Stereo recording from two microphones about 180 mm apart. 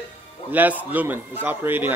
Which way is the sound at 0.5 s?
10° right (ahead or behind).